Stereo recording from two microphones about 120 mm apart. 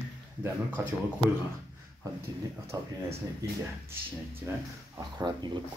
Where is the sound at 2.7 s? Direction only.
30° right (ahead or behind).